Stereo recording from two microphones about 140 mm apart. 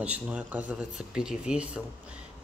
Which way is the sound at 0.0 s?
10° right (ahead or behind).